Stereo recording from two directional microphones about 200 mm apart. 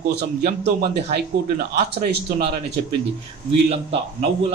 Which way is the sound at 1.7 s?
50° right (ahead or behind).